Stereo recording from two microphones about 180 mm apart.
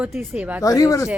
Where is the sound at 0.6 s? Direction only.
20° left (ahead or behind).